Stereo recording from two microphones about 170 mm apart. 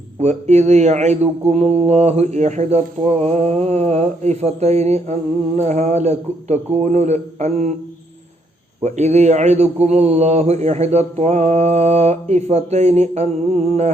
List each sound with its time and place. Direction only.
0.2 s speech: 40° right (ahead or behind)
8.8 s speech: 40° right (ahead or behind)